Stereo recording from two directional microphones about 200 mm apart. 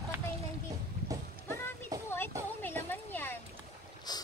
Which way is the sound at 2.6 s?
10° left (ahead or behind).